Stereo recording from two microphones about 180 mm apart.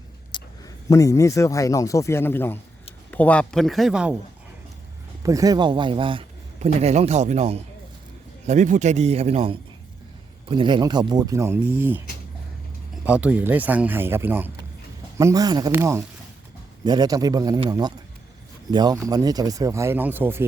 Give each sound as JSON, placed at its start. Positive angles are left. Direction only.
{"t": 0.3, "sound": "a sound", "side_deg": 25}
{"t": 0.9, "sound": "a man's voice", "side_deg": 20}
{"t": 5.2, "sound": "a man's voice", "side_deg": -20}
{"t": 13.1, "sound": "speech", "side_deg": -5}